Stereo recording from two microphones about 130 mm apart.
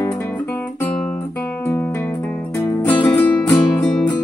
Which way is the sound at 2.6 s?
15° left (ahead or behind).